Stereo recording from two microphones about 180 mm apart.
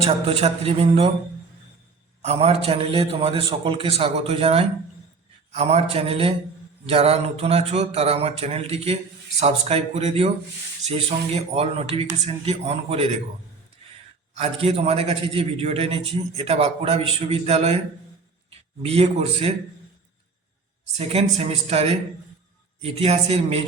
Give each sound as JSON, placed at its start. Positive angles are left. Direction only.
{"t": 0.0, "sound": "a man's voice", "side_deg": -35}
{"t": 2.2, "sound": "a man's voice", "side_deg": -35}
{"t": 14.3, "sound": "a man's voice", "side_deg": -35}
{"t": 18.8, "sound": "a man's voice", "side_deg": -35}
{"t": 20.8, "sound": "a man's voice", "side_deg": -35}